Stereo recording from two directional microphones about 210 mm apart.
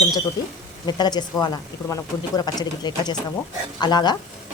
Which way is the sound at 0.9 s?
20° left (ahead or behind).